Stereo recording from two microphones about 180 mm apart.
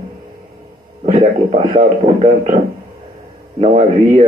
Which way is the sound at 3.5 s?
35° right (ahead or behind).